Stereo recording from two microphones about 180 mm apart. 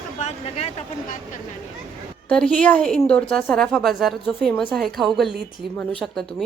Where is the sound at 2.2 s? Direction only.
5° left (ahead or behind).